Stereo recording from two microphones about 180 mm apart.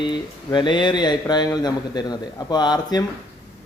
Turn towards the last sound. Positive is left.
turn(degrees=20)  # may be behind; listen again after turning